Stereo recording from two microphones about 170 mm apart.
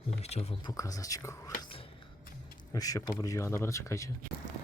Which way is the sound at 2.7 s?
20° left (ahead or behind).